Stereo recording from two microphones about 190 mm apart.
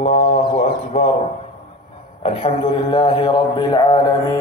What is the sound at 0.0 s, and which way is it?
Mantra, 40° left (ahead or behind).